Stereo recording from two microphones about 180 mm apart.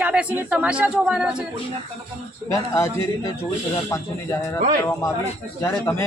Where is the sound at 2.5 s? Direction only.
15° left (ahead or behind).